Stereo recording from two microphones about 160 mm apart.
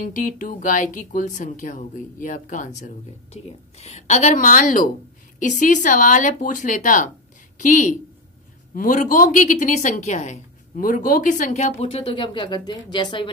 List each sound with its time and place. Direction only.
0.0 s a woman's voice: 55° left (ahead or behind); by 13.3 s 30° left (ahead or behind)